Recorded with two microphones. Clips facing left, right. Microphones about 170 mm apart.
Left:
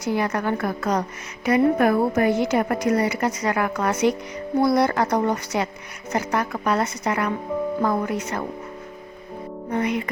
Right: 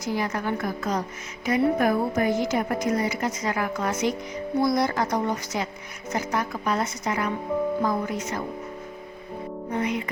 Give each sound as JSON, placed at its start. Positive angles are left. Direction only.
{"t": 0.0, "sound": "a woman's voice", "side_deg": 65}
{"t": 9.7, "sound": "a woman's voice", "side_deg": 60}